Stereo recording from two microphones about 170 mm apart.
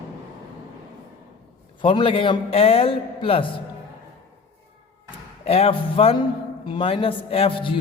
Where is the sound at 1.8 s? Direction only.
30° left (ahead or behind).